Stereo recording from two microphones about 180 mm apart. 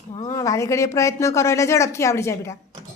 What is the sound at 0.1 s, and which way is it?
A woman's voice, 20° left (ahead or behind).